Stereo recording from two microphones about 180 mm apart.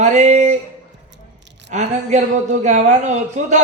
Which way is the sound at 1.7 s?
40° right (ahead or behind).